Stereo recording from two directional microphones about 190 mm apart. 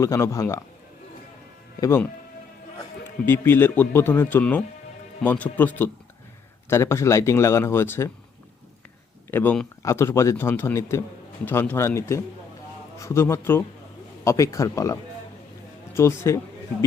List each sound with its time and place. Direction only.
0.0 s speech: 15° left (ahead or behind)
1.8 s speech: 15° left (ahead or behind)
3.2 s speech: 10° left (ahead or behind)
9.3 s speech: 10° left (ahead or behind)
16.0 s speech: 15° left (ahead or behind)